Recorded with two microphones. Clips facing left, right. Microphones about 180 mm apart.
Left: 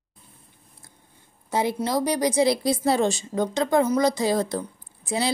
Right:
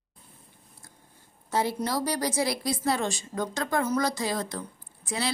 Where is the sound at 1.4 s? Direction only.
15° left (ahead or behind).